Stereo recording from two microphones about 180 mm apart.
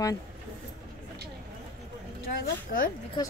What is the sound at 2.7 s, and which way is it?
Speech, 45° left (ahead or behind).